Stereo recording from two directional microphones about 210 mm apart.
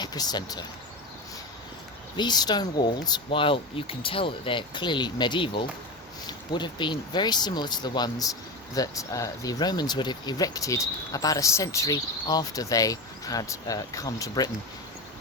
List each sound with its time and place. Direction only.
0.0 s speech: 20° left (ahead or behind)
2.1 s speech: 20° left (ahead or behind)